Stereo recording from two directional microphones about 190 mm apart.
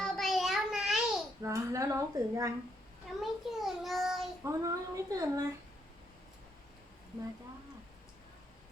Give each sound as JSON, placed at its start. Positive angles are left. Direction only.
{"t": 0.0, "sound": "child singing", "side_deg": 0}
{"t": 1.4, "sound": "a woman's voice", "side_deg": -15}
{"t": 3.2, "sound": "a child's voice", "side_deg": 0}
{"t": 4.4, "sound": "a woman's voice", "side_deg": -15}